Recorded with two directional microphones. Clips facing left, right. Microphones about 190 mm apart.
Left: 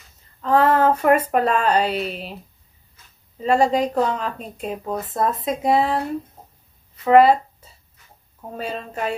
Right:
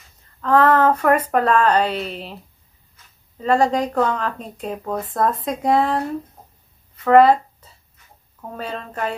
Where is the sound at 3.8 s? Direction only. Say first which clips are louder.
Even; 20° left (ahead or behind).